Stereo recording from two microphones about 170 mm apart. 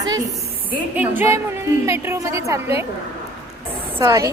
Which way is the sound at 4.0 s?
20° right (ahead or behind).